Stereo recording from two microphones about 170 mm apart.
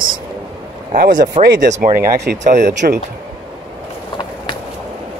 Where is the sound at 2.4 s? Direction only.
45° right (ahead or behind).